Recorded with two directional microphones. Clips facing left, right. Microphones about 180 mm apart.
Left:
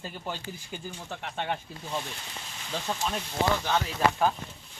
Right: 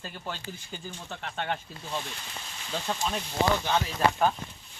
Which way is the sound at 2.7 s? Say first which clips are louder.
Even; centre (ahead or behind).